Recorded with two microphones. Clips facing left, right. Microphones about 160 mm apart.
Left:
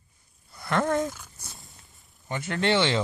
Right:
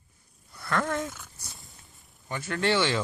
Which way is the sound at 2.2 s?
20° left (ahead or behind).